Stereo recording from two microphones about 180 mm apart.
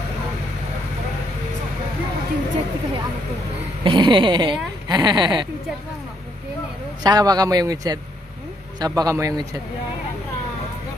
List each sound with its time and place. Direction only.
3.8 s speech: 25° right (ahead or behind)
7.0 s speech: 20° right (ahead or behind)